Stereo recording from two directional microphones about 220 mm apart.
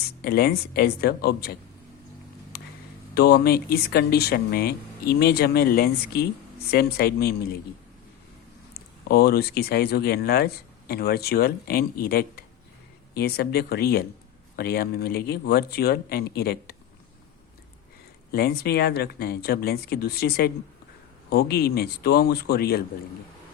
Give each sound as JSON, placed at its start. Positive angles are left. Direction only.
{"t": 0.0, "sound": "speech", "side_deg": 45}
{"t": 3.2, "sound": "speech", "side_deg": 45}
{"t": 9.0, "sound": "speech", "side_deg": 45}
{"t": 18.3, "sound": "speech", "side_deg": 45}